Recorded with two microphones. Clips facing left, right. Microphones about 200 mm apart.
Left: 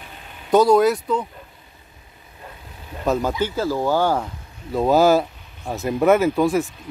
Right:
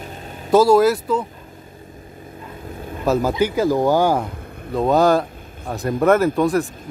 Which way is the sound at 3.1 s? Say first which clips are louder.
Right 3 dB; 5° right (ahead or behind).